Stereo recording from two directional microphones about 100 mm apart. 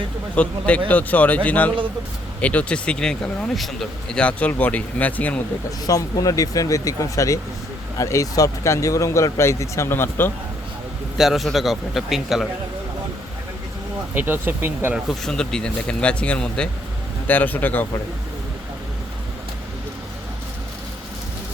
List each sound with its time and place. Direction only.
0.3 s speech: 10° left (ahead or behind)
5.8 s speech: 40° left (ahead or behind); by 10.3 s 20° left (ahead or behind)
11.2 s a man's voice: centre (ahead or behind)
14.1 s speech: 20° right (ahead or behind)
14.9 s speech: 5° left (ahead or behind)